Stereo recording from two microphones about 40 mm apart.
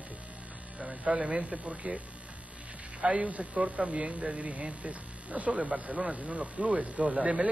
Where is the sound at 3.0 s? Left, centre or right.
Right.